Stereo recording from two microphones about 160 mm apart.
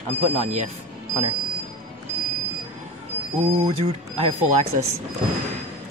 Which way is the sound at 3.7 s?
40° right (ahead or behind).